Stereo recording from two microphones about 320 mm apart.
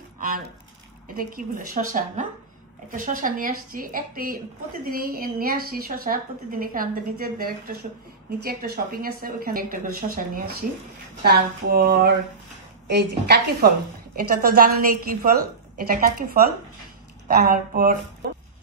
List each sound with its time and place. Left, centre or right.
1.0 s a woman's voice: right
18.2 s music: right